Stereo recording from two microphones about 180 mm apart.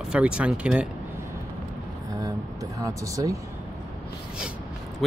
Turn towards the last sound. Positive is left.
turn(degrees=0)  # may be behind; listen again after turning